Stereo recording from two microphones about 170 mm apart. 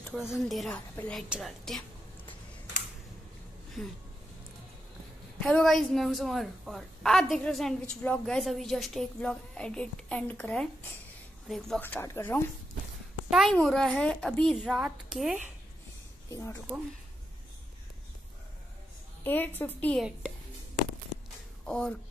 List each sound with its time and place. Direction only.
0.1 s a woman's voice: centre (ahead or behind)
3.8 s a woman's voice: centre (ahead or behind)
5.4 s a woman's voice: 5° left (ahead or behind)
13.3 s a woman's voice: centre (ahead or behind)
16.3 s speech: 15° left (ahead or behind)
19.2 s speech: 10° left (ahead or behind)
20.0 s a woman's voice: centre (ahead or behind)
21.6 s a woman's voice: 5° left (ahead or behind)